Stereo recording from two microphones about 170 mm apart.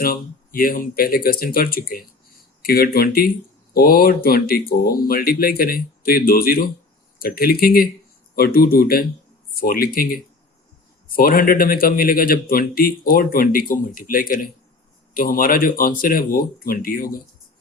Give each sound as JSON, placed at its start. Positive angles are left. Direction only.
{"t": 0.0, "sound": "speech", "side_deg": 60}